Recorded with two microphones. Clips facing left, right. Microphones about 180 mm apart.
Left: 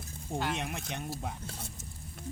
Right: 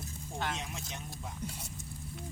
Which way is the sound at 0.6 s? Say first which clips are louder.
Left 5 dB; 60° left (ahead or behind).